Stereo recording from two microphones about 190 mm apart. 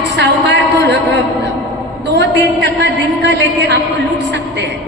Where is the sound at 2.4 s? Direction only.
70° right (ahead or behind).